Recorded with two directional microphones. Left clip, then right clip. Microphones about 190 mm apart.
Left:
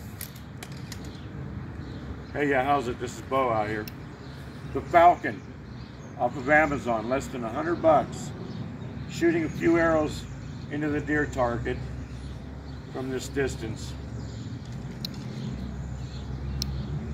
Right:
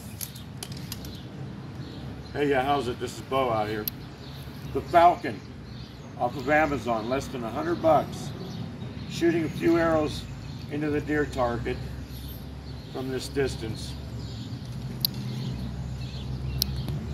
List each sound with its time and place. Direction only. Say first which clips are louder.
2.3 s speech: even; 20° left (ahead or behind)
4.9 s speech: left 1 dB; 10° left (ahead or behind)
6.3 s speech: left 2 dB; 5° left (ahead or behind)
9.2 s speech: even; 5° left (ahead or behind)
12.9 s speech: right 1 dB; 5° left (ahead or behind)
15.0 s mouse: right 8 dB; 5° left (ahead or behind)
16.6 s a sound: right 5 dB; centre (ahead or behind)